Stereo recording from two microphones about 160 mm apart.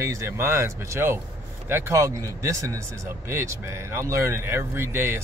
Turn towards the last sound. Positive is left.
turn(degrees=-15)  # may be behind; listen again after turning